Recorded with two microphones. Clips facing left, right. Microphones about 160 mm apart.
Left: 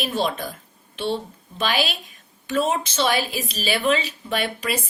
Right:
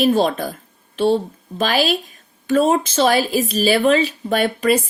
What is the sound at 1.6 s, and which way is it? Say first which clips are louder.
A woman's voice: right 6 dB; 45° right (ahead or behind).